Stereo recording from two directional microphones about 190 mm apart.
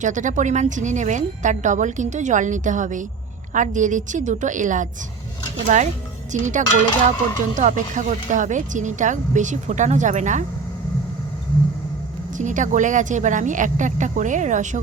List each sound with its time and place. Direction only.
0.0 s speech: 40° right (ahead or behind)
12.4 s speech: 40° right (ahead or behind)